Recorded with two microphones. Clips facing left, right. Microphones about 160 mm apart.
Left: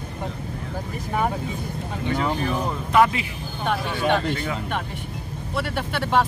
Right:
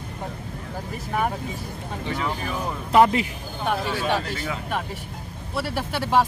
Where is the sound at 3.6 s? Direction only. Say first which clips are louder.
Left 1 dB; 5° right (ahead or behind).